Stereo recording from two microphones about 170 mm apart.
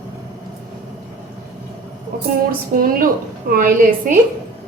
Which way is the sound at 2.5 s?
55° right (ahead or behind).